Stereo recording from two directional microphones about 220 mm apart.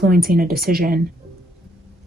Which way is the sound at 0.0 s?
40° right (ahead or behind).